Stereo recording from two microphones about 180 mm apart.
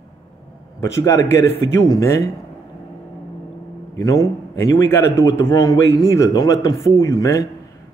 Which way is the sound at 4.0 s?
20° left (ahead or behind).